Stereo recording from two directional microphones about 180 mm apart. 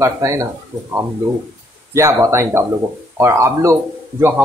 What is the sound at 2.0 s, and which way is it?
Speech, 15° right (ahead or behind).